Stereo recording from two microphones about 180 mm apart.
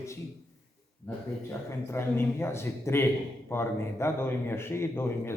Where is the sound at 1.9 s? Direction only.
15° left (ahead or behind).